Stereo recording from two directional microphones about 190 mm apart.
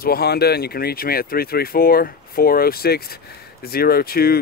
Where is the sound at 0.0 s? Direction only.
55° left (ahead or behind).